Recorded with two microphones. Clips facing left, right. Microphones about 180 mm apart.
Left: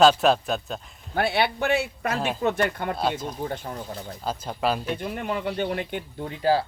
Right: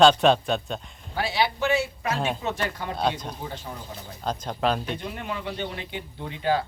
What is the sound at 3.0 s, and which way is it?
Speech, 5° left (ahead or behind).